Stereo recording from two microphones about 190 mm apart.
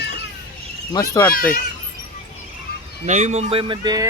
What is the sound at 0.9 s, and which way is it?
Speech, 15° left (ahead or behind).